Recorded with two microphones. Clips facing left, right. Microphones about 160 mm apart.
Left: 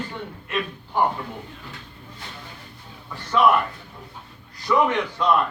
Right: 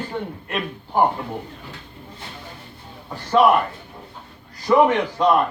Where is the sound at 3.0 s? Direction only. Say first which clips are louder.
Right 4 dB; 40° right (ahead or behind).